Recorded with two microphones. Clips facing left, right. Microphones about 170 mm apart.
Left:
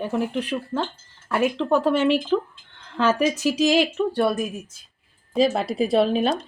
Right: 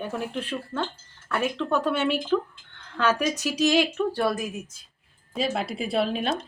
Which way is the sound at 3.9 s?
20° left (ahead or behind).